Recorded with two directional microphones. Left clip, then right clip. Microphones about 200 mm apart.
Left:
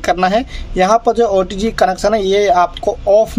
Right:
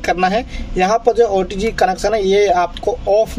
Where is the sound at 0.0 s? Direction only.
25° left (ahead or behind).